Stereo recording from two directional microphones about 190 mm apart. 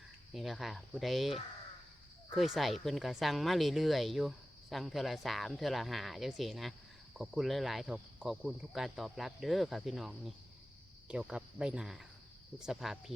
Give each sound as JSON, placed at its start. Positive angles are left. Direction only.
{"t": 0.3, "sound": "speech", "side_deg": 0}